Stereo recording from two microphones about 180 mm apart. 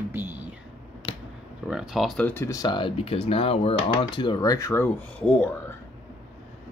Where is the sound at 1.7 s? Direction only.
5° right (ahead or behind).